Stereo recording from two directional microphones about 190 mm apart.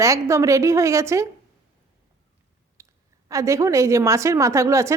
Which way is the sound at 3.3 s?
15° right (ahead or behind).